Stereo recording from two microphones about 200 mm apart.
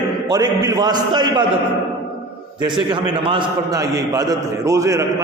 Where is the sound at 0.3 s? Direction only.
20° right (ahead or behind).